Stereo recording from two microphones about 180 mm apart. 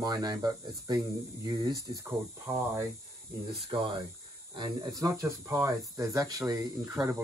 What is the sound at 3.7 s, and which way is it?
Speech, 25° right (ahead or behind).